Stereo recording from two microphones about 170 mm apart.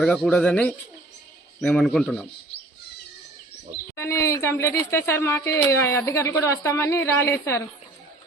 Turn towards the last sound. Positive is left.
turn(degrees=15)  # may be behind; listen again after turning